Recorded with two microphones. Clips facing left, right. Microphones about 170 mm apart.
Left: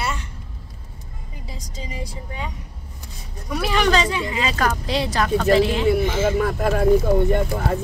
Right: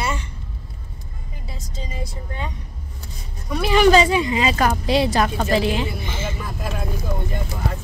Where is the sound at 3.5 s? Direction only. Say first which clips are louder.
Right 5 dB; centre (ahead or behind); by 5.4 s 15° right (ahead or behind).